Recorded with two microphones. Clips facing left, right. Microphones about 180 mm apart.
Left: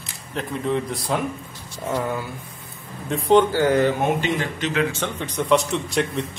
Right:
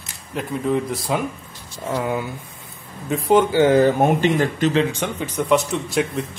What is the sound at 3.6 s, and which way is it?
Speech, 25° right (ahead or behind).